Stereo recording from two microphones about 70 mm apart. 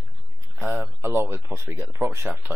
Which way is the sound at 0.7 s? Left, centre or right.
Right.